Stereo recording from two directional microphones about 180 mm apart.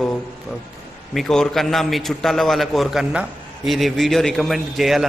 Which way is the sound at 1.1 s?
Centre (ahead or behind).